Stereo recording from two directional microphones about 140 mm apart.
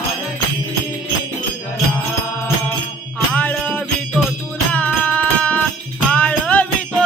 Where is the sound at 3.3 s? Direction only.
10° left (ahead or behind).